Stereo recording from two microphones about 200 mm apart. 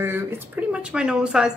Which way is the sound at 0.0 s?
10° right (ahead or behind).